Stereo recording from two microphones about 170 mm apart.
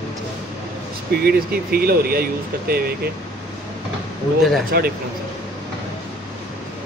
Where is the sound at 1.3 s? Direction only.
60° right (ahead or behind).